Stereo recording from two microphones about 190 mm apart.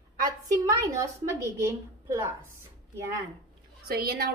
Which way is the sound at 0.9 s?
15° right (ahead or behind).